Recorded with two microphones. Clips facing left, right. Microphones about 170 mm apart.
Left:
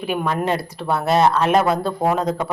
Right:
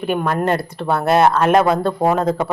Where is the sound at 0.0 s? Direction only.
Centre (ahead or behind).